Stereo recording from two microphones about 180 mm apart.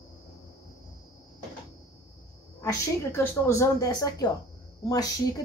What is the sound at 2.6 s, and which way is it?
A woman's voice, 15° left (ahead or behind).